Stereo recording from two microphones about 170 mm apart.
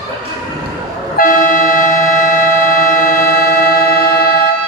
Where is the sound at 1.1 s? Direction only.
55° left (ahead or behind).